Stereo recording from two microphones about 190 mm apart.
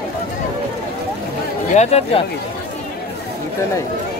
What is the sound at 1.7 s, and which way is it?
Speech, 35° left (ahead or behind).